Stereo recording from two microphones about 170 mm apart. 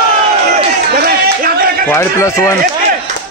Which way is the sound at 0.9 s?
60° right (ahead or behind).